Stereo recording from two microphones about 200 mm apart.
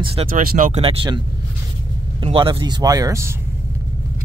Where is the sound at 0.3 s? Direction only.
40° right (ahead or behind).